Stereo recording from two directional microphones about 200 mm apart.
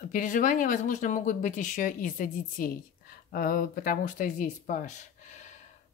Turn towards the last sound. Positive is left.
turn(degrees=35)  # may be behind; listen again after turning